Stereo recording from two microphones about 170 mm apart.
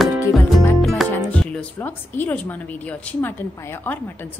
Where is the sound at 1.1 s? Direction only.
5° left (ahead or behind).